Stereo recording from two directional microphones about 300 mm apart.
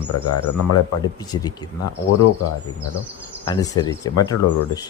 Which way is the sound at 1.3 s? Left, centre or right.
Centre.